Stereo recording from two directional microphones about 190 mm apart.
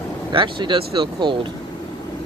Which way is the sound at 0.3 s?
25° right (ahead or behind).